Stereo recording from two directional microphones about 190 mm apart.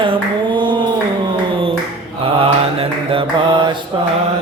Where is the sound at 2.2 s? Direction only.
30° right (ahead or behind).